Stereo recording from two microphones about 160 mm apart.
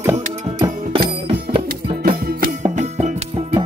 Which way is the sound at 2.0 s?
65° right (ahead or behind).